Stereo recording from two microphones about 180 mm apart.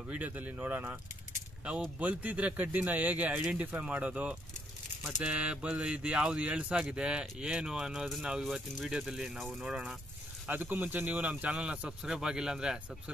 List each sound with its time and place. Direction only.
0.1 s speech: 10° right (ahead or behind)
2.0 s speech: 10° right (ahead or behind)